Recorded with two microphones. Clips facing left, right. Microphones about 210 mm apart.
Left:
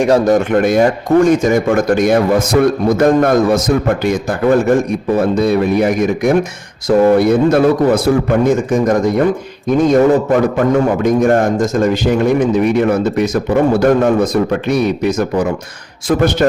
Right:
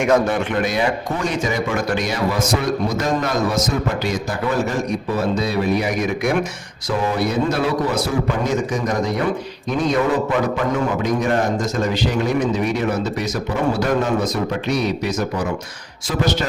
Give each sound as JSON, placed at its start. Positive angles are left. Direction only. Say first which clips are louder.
{"t": 0.0, "sound": "speech", "louder": "left 6 dB", "side_deg": 35}
{"t": 0.5, "sound": "speech", "louder": "left 8 dB", "side_deg": 50}